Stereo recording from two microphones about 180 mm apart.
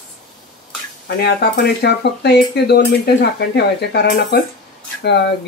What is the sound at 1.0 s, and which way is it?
Speech, 65° left (ahead or behind).